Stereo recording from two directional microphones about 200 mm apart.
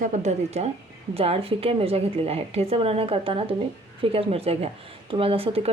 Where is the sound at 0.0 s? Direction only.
35° right (ahead or behind).